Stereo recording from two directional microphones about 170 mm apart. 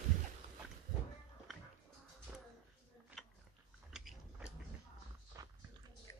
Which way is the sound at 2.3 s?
10° right (ahead or behind).